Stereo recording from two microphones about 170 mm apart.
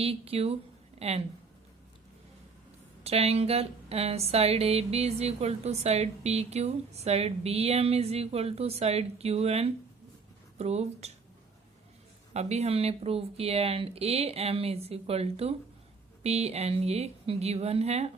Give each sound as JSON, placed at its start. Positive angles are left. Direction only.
{"t": 0.0, "sound": "speech", "side_deg": -35}
{"t": 3.0, "sound": "speech", "side_deg": -35}
{"t": 12.3, "sound": "speech", "side_deg": -40}